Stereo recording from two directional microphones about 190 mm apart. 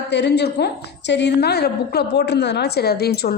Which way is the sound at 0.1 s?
60° left (ahead or behind).